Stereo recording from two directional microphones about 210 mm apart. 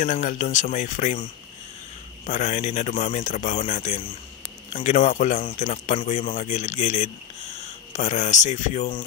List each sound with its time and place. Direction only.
0.0 s speech: 40° left (ahead or behind)